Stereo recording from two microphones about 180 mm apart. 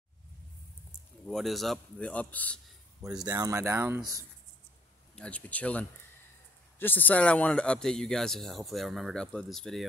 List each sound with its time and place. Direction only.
1.2 s speech: centre (ahead or behind)
3.3 s speech: 20° right (ahead or behind)
5.1 s speech: 5° left (ahead or behind)